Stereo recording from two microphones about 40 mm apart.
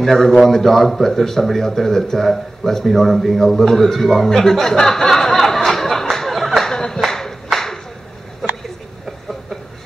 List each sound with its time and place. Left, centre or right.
0.0 s a man's voice: centre
6.7 s clapping: centre
7.5 s a sound: centre